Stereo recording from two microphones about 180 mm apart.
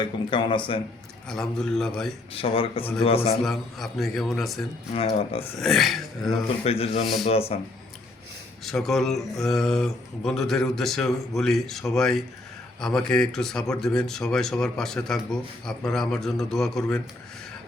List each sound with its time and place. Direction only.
0.0 s speech: 25° left (ahead or behind)
1.3 s speech: 5° left (ahead or behind)
2.3 s speech: 30° left (ahead or behind)
3.4 s speech: centre (ahead or behind)
4.9 s speech: 35° left (ahead or behind)
5.5 s speech: centre (ahead or behind)
6.7 s speech: 35° left (ahead or behind)
8.6 s speech: centre (ahead or behind)